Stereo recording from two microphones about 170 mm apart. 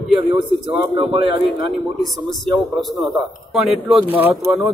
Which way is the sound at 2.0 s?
Centre (ahead or behind).